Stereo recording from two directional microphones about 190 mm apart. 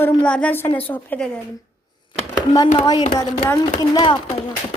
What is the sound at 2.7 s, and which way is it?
Speech, 25° left (ahead or behind).